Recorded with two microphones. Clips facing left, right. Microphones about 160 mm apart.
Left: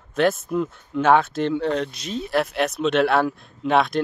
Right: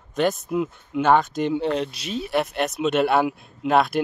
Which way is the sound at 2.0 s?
5° right (ahead or behind).